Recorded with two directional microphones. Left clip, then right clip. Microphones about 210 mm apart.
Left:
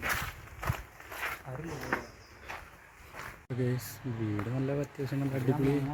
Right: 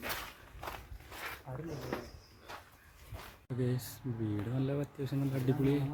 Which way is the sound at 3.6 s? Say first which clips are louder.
Left 3 dB; centre (ahead or behind).